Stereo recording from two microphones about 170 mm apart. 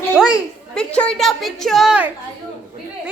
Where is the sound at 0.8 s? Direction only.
5° left (ahead or behind).